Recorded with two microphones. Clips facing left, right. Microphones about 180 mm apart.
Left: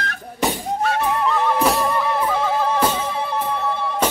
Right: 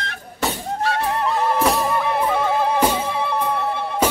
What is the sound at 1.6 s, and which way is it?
Music, centre (ahead or behind).